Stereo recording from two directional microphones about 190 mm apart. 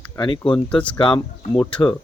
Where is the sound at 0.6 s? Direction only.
5° left (ahead or behind).